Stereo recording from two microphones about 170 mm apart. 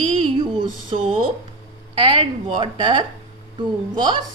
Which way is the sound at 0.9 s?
30° right (ahead or behind).